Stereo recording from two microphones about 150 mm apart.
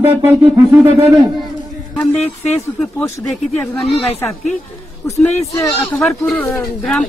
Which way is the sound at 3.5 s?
10° left (ahead or behind).